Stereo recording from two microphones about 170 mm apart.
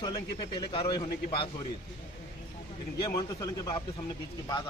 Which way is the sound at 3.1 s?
20° left (ahead or behind).